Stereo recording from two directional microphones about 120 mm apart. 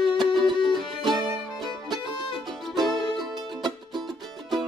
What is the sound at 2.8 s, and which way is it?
Music, centre (ahead or behind).